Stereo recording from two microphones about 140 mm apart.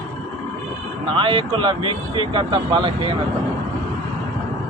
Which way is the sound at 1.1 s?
35° right (ahead or behind).